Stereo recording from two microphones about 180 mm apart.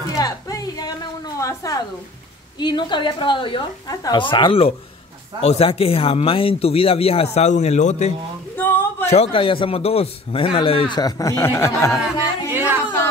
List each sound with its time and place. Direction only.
0.1 s music: 20° left (ahead or behind)
1.4 s a woman's voice: 20° left (ahead or behind); by 8.1 s 40° left (ahead or behind)
8.5 s a sound: 10° left (ahead or behind)
9.0 s a man's voice: 35° left (ahead or behind); by 12.0 s 15° left (ahead or behind)
12.4 s music: 10° right (ahead or behind)